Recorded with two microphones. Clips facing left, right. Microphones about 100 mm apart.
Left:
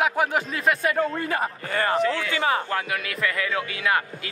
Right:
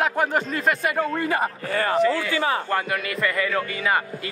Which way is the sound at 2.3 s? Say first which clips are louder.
Even; 20° left (ahead or behind).